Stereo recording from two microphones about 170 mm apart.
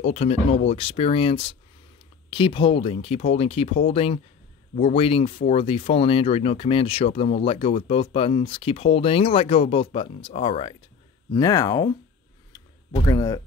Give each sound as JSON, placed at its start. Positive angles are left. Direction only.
{"t": 0.0, "sound": "speech", "side_deg": 35}
{"t": 11.3, "sound": "speech", "side_deg": 20}
{"t": 12.9, "sound": "speech", "side_deg": 20}